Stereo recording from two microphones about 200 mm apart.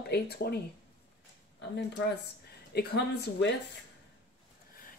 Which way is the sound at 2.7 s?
50° left (ahead or behind).